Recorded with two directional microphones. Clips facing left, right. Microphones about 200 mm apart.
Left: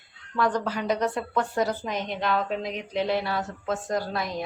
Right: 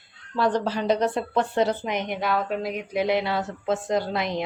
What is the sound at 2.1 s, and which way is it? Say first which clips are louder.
Speech: left 1 dB; 5° right (ahead or behind).